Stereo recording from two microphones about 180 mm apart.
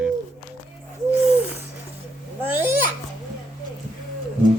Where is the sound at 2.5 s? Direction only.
10° right (ahead or behind).